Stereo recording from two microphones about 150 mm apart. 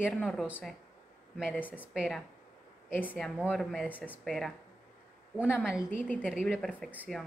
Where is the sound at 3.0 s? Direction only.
10° left (ahead or behind).